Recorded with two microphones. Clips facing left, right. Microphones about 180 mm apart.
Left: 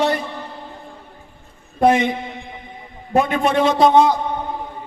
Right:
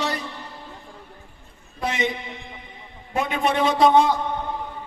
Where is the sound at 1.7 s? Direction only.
55° left (ahead or behind).